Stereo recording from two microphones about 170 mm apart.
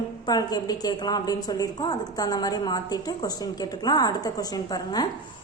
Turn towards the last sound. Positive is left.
turn(degrees=25)  # may be behind; listen again after turning